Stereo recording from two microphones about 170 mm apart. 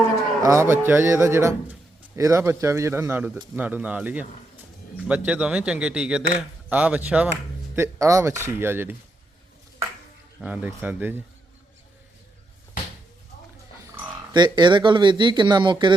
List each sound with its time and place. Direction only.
0.4 s a man's voice: 15° right (ahead or behind)
7.8 s a man's voice: 20° right (ahead or behind)
10.4 s a man's voice: 10° right (ahead or behind)
13.8 s speech: 20° right (ahead or behind)